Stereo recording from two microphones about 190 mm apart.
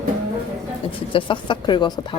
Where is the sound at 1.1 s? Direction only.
25° left (ahead or behind).